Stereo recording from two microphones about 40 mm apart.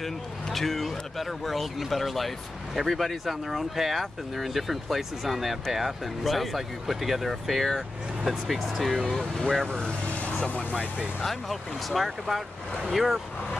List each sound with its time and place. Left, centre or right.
0.0 s speech: centre
9.7 s speech: left
10.6 s speech: right
11.2 s speech: centre